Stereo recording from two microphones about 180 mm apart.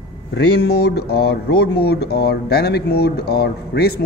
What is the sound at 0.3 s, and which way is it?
Speech, 65° left (ahead or behind).